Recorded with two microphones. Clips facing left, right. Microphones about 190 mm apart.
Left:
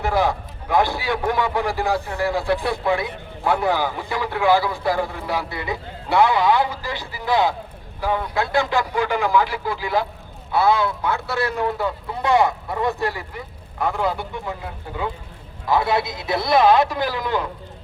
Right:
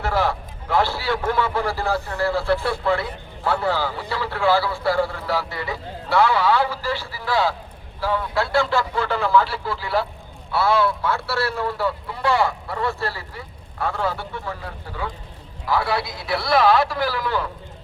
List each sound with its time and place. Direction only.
0.0 s a man's voice: 15° left (ahead or behind)